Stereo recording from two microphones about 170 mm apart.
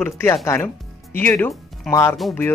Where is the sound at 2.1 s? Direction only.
Centre (ahead or behind).